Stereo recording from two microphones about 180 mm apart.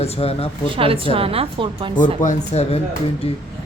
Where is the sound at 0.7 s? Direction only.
30° right (ahead or behind).